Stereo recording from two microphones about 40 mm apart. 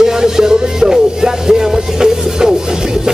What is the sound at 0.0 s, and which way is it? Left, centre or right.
Music, centre.